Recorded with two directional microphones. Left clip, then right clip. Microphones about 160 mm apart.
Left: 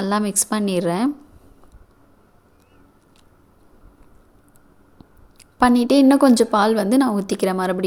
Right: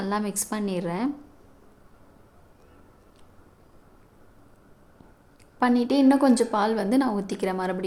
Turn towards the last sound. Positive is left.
turn(degrees=35)  # may be behind; listen again after turning